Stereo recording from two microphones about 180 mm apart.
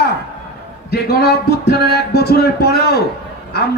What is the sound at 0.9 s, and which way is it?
A man's voice, 65° left (ahead or behind).